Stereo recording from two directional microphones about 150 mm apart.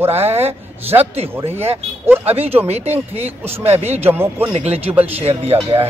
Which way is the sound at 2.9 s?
15° right (ahead or behind).